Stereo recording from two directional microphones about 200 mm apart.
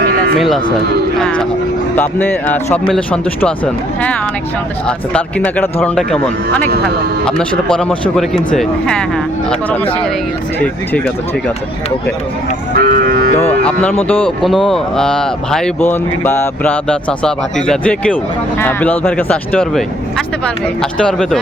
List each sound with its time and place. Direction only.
0.1 s sheep: 45° right (ahead or behind)
0.3 s speech: centre (ahead or behind)
4.9 s speech: 5° left (ahead or behind)
10.9 s speech: 5° left (ahead or behind)
12.7 s cattle: 50° right (ahead or behind)
13.5 s speech: 5° left (ahead or behind)